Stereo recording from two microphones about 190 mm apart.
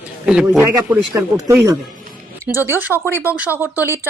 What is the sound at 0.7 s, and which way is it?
A woman's voice, 15° right (ahead or behind).